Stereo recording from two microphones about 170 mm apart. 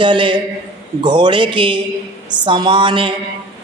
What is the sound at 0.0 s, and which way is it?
A man's voice, 30° right (ahead or behind).